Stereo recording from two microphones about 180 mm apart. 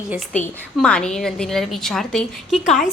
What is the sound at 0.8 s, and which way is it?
A woman's voice, 5° left (ahead or behind).